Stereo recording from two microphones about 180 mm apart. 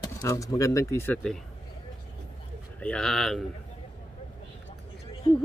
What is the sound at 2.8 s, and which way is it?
Speech, 5° left (ahead or behind).